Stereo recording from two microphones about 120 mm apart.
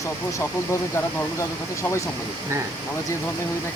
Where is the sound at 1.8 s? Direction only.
25° left (ahead or behind).